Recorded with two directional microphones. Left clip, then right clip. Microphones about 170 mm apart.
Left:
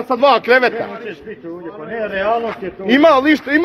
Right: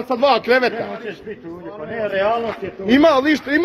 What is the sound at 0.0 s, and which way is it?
Speech, 15° right (ahead or behind).